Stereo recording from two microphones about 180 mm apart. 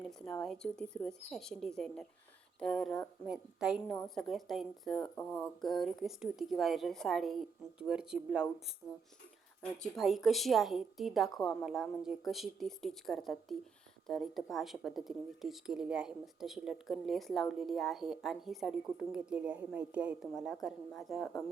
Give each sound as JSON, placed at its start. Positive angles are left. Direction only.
{"t": 0.1, "sound": "speech", "side_deg": 5}
{"t": 9.6, "sound": "speech", "side_deg": 5}